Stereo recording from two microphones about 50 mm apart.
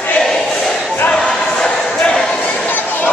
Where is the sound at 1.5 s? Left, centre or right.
Centre.